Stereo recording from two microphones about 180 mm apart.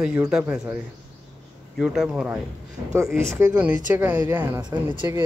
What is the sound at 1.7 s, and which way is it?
Speech, 5° right (ahead or behind).